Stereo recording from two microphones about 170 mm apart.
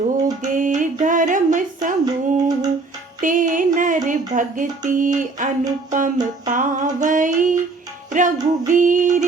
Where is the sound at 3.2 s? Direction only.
50° right (ahead or behind).